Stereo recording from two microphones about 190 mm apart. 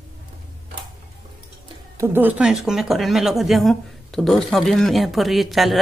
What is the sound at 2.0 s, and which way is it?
Speech, 10° right (ahead or behind).